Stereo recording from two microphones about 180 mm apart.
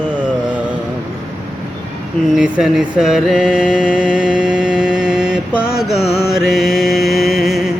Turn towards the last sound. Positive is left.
turn(degrees=0)  # may be behind; listen again after turning